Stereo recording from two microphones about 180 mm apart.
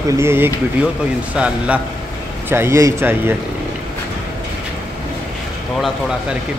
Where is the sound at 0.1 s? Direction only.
15° right (ahead or behind).